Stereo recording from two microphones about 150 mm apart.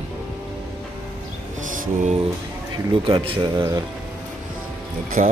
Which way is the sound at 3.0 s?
35° right (ahead or behind).